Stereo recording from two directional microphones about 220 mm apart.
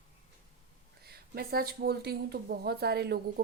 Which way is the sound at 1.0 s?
45° right (ahead or behind).